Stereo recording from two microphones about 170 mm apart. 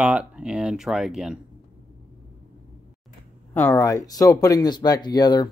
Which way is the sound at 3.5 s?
15° left (ahead or behind).